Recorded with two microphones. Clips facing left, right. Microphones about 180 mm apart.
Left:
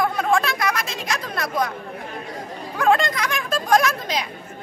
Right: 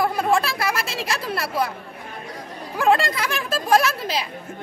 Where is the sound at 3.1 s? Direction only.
30° right (ahead or behind).